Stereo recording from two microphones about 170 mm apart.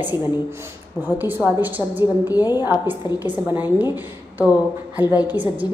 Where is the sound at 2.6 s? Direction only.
10° right (ahead or behind).